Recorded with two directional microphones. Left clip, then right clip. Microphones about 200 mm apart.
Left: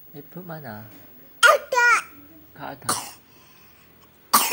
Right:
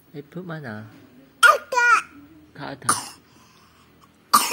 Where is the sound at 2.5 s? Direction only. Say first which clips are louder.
Right 1 dB; 15° right (ahead or behind).